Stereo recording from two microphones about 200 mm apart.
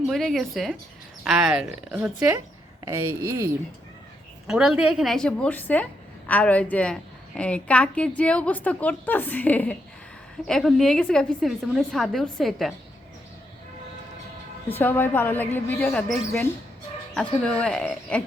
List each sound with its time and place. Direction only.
0.1 s a woman's voice: centre (ahead or behind); by 3.5 s 15° right (ahead or behind)
4.4 s a woman's voice: centre (ahead or behind)
14.7 s a woman's voice: 10° left (ahead or behind)